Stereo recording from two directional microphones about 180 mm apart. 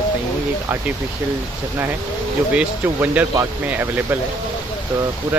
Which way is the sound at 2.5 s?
10° right (ahead or behind).